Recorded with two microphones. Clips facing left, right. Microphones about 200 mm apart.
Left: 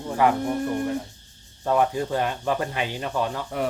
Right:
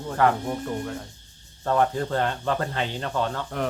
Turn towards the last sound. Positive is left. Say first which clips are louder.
# left 1 dB
turn(degrees=10)  # may be behind; listen again after turning